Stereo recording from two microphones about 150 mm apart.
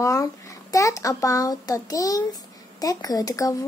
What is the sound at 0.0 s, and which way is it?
A child's voice, 20° left (ahead or behind).